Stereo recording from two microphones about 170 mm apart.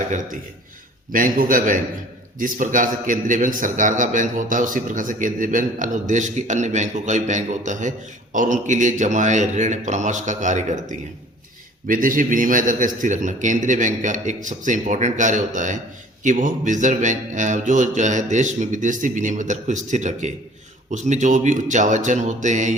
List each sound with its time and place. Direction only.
1.1 s a man's voice: 55° right (ahead or behind)